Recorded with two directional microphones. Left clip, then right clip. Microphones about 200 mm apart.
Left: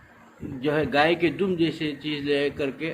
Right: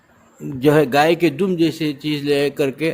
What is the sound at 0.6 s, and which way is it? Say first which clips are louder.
A man's voice: right 8 dB; 60° right (ahead or behind).